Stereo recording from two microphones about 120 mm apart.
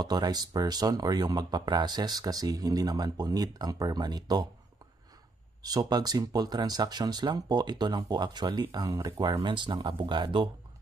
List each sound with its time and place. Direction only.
0.0 s speech: 35° right (ahead or behind)
5.6 s speech: 30° right (ahead or behind)